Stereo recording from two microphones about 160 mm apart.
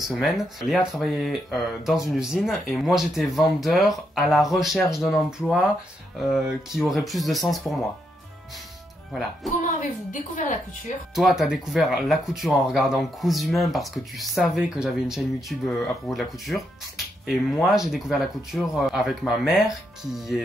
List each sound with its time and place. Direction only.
0.1 s speech: centre (ahead or behind)
9.8 s a woman's voice: 55° left (ahead or behind)
11.1 s speech: centre (ahead or behind)